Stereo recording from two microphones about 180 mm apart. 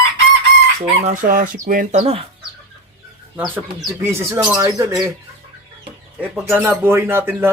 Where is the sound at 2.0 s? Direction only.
35° right (ahead or behind).